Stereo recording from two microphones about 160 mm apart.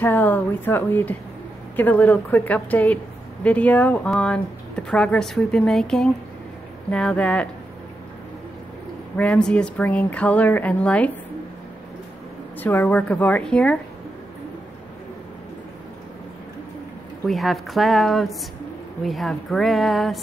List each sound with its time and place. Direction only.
0.0 s a woman's voice: 10° left (ahead or behind)
9.1 s a woman's voice: 10° left (ahead or behind)
12.5 s a woman's voice: 10° left (ahead or behind)
17.3 s speech: centre (ahead or behind)